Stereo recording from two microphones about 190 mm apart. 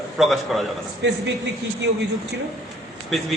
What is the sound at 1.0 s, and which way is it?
Speech, 65° right (ahead or behind).